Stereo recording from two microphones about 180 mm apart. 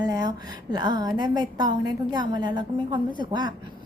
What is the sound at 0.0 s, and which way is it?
A woman's voice, 20° right (ahead or behind).